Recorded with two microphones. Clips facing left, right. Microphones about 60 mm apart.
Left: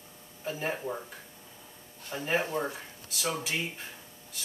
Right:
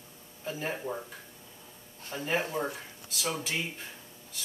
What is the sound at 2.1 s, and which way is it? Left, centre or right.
Speech, centre.